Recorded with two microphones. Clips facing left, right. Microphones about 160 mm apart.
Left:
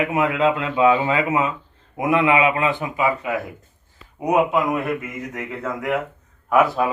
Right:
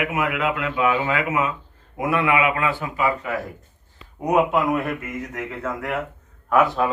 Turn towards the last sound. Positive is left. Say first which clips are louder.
# left 1 dB
turn(degrees=5)  # may be behind; listen again after turning